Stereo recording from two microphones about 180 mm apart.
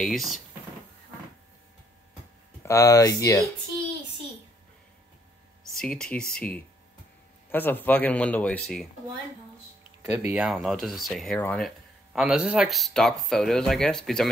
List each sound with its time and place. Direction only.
0.0 s speech: centre (ahead or behind)
2.6 s speech: 15° left (ahead or behind)
5.8 s speech: 5° left (ahead or behind)
10.1 s speech: 15° right (ahead or behind)
10.4 s speech: centre (ahead or behind)